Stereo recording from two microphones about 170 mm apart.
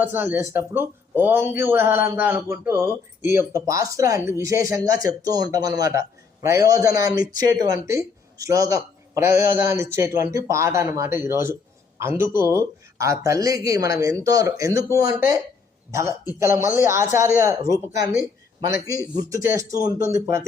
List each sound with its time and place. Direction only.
0.0 s a man's voice: 10° right (ahead or behind)